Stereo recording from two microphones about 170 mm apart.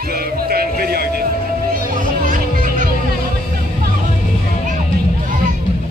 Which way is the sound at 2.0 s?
50° right (ahead or behind).